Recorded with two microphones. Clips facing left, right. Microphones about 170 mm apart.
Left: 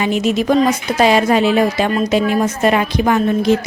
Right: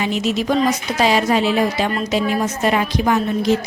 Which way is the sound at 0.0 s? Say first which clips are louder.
Left 4 dB; 55° left (ahead or behind).